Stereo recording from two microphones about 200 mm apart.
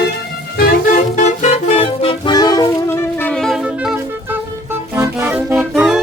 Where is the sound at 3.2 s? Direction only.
5° left (ahead or behind).